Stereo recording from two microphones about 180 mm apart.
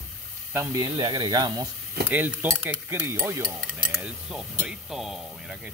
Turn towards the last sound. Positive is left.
turn(degrees=0)  # may be behind; listen again after turning